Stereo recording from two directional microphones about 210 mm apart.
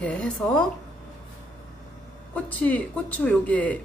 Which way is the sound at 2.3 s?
5° left (ahead or behind).